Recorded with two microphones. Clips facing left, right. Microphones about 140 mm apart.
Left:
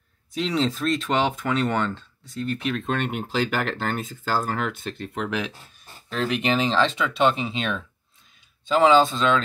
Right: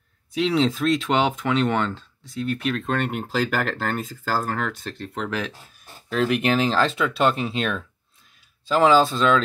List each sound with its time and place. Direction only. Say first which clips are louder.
0.3 s speech: right 3 dB; centre (ahead or behind)